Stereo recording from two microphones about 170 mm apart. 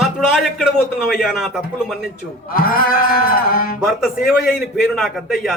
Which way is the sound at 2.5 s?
60° left (ahead or behind).